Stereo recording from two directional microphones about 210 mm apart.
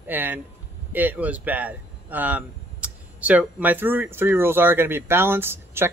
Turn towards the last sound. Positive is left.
turn(degrees=-10)  # may be behind; listen again after turning